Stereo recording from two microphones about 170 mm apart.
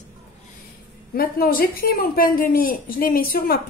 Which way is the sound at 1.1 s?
60° left (ahead or behind).